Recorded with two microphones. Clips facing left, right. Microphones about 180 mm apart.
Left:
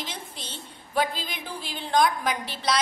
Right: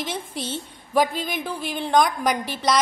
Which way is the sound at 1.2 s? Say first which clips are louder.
Right 8 dB; 50° right (ahead or behind).